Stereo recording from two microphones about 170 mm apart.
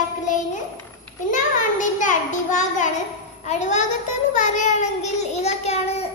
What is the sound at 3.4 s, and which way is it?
A child's voice, 45° left (ahead or behind).